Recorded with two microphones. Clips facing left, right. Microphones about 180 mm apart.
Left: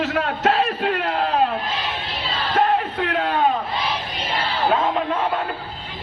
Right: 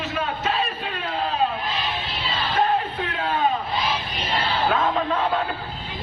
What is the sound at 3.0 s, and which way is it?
Speech, 70° left (ahead or behind).